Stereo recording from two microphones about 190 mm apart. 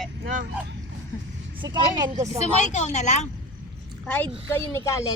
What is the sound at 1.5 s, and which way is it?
Speech, 20° right (ahead or behind).